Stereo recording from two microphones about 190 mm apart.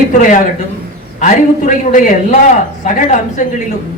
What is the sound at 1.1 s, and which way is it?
A man's voice, 40° left (ahead or behind).